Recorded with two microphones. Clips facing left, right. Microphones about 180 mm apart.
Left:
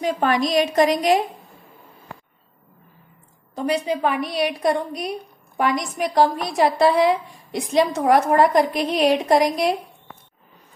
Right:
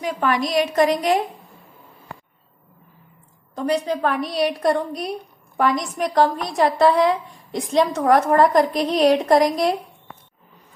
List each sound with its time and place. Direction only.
0.0 s a woman's voice: 25° left (ahead or behind)
3.5 s a woman's voice: 10° left (ahead or behind)